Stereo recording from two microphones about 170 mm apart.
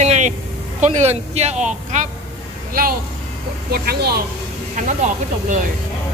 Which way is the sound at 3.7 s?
65° right (ahead or behind).